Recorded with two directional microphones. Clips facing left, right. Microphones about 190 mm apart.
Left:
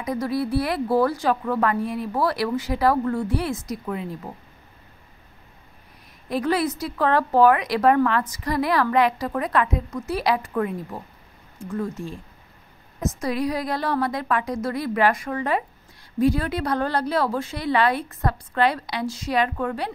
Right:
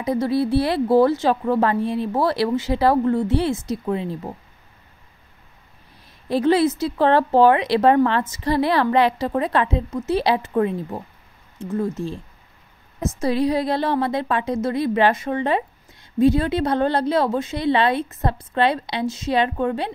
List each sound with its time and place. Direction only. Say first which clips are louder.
0.0 s a woman's voice: right 4 dB; 25° right (ahead or behind)
6.2 s a woman's voice: right 5 dB; 30° right (ahead or behind)